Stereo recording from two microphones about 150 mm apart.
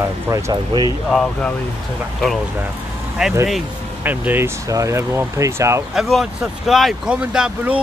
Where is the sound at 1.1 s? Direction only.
5° left (ahead or behind).